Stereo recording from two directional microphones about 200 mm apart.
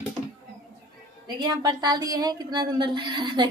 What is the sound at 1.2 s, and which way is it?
Speech, 20° right (ahead or behind).